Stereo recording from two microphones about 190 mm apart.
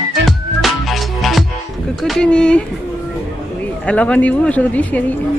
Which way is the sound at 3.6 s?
5° left (ahead or behind).